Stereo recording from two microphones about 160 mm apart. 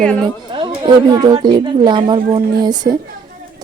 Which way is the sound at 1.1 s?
25° right (ahead or behind).